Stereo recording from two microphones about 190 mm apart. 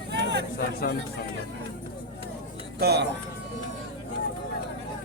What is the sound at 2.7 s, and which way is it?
Speech, 60° right (ahead or behind).